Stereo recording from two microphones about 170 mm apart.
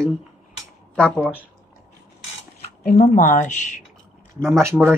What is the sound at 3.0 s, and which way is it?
Speech, 50° left (ahead or behind).